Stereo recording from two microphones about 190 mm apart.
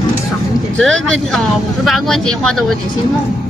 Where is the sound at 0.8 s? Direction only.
Centre (ahead or behind).